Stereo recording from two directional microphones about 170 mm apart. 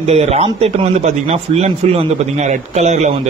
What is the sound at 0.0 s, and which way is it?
A man's voice, 40° right (ahead or behind).